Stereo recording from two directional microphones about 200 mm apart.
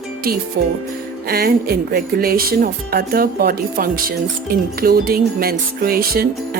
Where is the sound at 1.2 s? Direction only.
50° right (ahead or behind).